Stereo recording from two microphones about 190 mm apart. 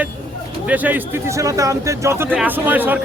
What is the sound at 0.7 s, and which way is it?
A man's voice, 10° right (ahead or behind).